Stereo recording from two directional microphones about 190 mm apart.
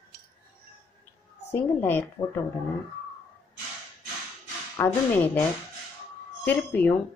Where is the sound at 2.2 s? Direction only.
20° left (ahead or behind).